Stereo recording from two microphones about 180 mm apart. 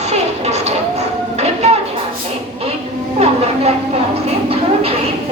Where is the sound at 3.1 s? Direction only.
35° right (ahead or behind).